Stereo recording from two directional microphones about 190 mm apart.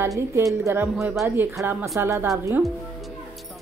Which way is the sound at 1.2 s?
10° right (ahead or behind).